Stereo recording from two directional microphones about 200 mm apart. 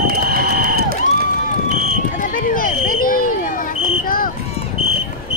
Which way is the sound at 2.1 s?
45° left (ahead or behind).